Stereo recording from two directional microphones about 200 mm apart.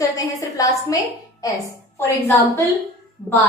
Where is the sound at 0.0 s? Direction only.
15° left (ahead or behind).